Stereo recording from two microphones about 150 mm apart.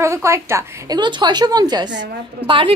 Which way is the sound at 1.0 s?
30° right (ahead or behind).